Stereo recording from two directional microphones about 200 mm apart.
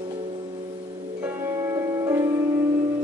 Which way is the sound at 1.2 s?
15° right (ahead or behind).